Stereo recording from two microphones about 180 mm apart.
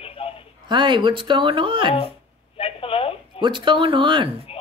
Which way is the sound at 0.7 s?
25° right (ahead or behind).